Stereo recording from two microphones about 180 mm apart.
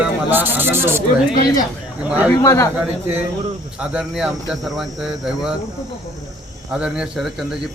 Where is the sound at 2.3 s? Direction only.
20° left (ahead or behind).